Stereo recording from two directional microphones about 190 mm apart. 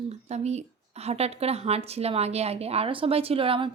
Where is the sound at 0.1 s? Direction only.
35° right (ahead or behind).